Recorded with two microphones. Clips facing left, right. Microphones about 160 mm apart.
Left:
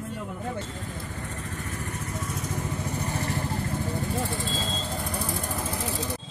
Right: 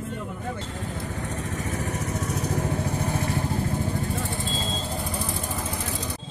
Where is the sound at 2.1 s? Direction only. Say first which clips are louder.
Right 5 dB; 75° right (ahead or behind).